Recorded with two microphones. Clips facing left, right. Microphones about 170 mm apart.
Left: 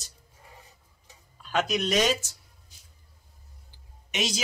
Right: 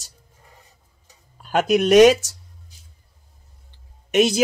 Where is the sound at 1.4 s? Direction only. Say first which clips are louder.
Right 9 dB; 45° right (ahead or behind); by 2.4 s 75° right (ahead or behind).